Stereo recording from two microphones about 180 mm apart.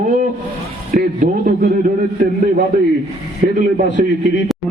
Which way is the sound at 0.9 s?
50° right (ahead or behind).